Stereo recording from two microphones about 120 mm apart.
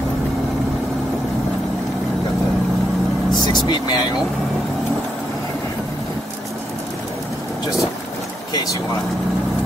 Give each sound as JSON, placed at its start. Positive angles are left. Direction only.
{"t": 3.6, "sound": "speech", "side_deg": 35}